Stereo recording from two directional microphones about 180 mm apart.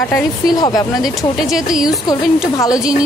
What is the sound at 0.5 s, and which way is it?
Speech, 20° left (ahead or behind).